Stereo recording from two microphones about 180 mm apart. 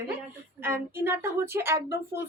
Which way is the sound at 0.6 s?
15° right (ahead or behind).